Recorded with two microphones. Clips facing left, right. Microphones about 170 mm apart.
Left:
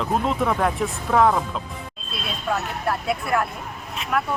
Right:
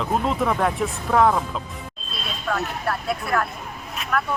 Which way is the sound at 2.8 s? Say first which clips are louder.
Left 3 dB; 25° left (ahead or behind).